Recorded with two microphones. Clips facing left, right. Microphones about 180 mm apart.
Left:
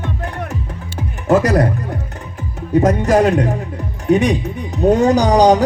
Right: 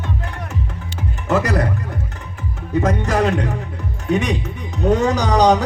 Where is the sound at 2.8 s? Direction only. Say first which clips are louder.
Left 5 dB; 35° left (ahead or behind).